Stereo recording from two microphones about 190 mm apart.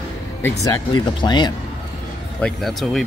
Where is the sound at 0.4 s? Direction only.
15° left (ahead or behind).